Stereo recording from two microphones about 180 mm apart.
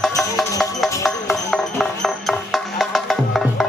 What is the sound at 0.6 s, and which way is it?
Music, centre (ahead or behind).